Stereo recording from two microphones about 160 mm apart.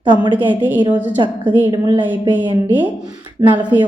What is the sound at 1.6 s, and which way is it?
Speech, 25° right (ahead or behind).